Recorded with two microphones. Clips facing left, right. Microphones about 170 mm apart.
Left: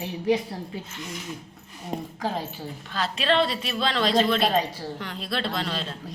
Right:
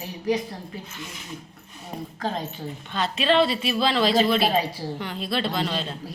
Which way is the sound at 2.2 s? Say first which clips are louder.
Right 3 dB; 10° left (ahead or behind).